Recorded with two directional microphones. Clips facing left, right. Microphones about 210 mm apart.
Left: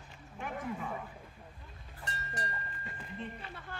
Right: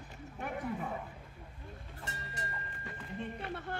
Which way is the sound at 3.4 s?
60° right (ahead or behind).